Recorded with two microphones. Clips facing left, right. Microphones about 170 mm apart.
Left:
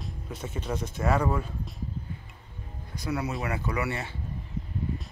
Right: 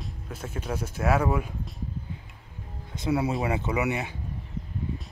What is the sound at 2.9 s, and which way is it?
Speech, 25° right (ahead or behind).